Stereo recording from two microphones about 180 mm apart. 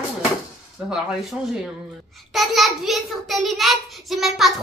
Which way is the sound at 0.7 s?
5° right (ahead or behind).